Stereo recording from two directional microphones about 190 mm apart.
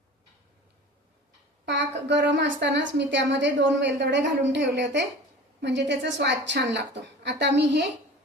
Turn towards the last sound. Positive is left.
turn(degrees=-65)  # may be behind; listen again after turning